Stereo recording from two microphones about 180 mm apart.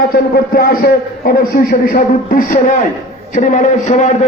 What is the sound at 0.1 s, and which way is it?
A man's voice, 55° left (ahead or behind).